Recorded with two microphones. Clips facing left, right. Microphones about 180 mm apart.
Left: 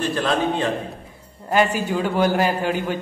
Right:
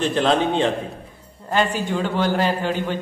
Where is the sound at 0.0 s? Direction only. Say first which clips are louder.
Right 2 dB; 25° right (ahead or behind).